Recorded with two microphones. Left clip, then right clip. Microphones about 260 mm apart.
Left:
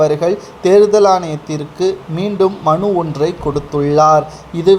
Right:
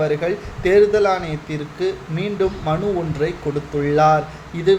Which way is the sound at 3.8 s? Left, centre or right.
Left.